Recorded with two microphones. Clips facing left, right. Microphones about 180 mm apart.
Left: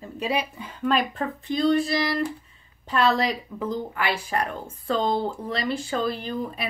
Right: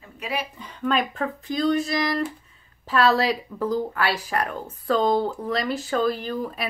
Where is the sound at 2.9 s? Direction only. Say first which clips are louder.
Right 2 dB; 5° right (ahead or behind).